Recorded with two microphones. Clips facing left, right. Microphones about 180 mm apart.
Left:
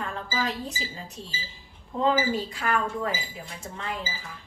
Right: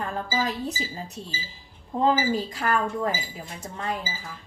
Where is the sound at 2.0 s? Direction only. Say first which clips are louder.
Right 2 dB; 40° right (ahead or behind).